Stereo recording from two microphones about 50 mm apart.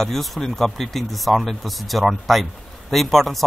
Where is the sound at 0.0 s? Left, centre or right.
Centre.